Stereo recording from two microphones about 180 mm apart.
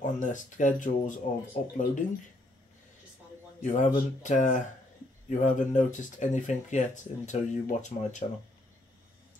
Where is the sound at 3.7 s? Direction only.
45° left (ahead or behind).